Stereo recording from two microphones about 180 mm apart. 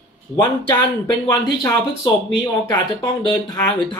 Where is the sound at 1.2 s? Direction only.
20° left (ahead or behind).